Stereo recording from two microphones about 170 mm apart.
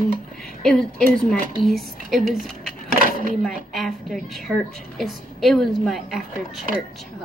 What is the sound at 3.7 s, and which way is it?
A woman's voice, centre (ahead or behind).